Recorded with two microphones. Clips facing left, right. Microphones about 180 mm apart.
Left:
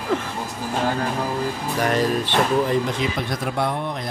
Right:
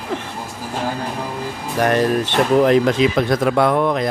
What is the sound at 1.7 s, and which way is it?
Speech, 55° right (ahead or behind).